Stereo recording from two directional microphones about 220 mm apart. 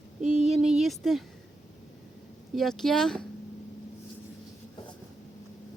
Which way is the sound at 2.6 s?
Centre (ahead or behind).